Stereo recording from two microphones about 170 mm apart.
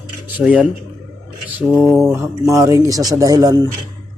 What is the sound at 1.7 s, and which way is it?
Speech, centre (ahead or behind).